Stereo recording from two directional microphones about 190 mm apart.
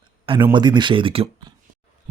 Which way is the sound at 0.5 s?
25° right (ahead or behind).